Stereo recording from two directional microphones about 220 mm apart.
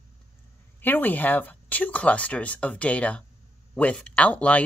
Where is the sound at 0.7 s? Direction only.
10° left (ahead or behind).